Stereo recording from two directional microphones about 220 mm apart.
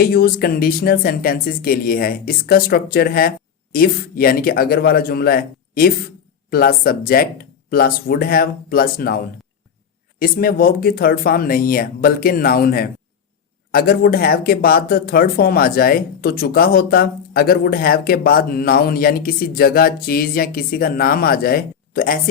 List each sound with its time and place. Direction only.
0.0 s speech: 45° left (ahead or behind)